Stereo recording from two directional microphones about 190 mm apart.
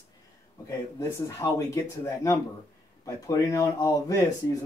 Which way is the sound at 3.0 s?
15° left (ahead or behind).